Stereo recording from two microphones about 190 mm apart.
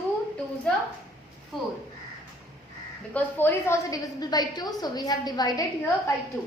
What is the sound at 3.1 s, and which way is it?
A woman's voice, 10° left (ahead or behind).